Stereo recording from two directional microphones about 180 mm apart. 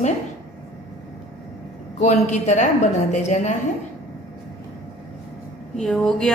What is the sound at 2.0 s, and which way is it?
A woman's voice, 40° left (ahead or behind).